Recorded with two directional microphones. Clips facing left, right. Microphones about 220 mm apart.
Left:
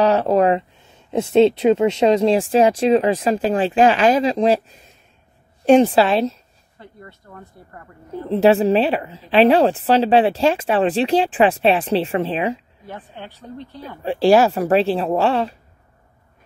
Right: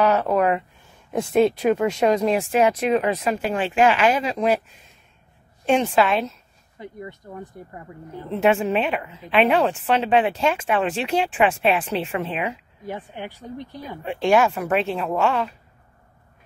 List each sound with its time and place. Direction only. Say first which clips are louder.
0.0 s speech: left 4 dB; 35° left (ahead or behind)
6.8 s speech: right 6 dB; 15° right (ahead or behind)
8.3 s speech: left 6 dB; 35° left (ahead or behind)
12.8 s speech: right 6 dB; 15° right (ahead or behind)
14.0 s speech: left 5 dB; 35° left (ahead or behind)